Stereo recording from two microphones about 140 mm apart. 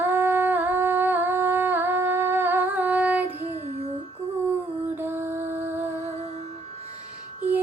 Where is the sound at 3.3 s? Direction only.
45° right (ahead or behind).